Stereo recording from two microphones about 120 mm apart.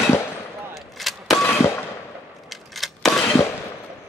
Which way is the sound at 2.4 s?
Centre (ahead or behind).